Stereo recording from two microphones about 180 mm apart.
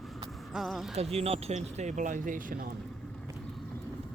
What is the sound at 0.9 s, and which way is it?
Speech, 35° right (ahead or behind).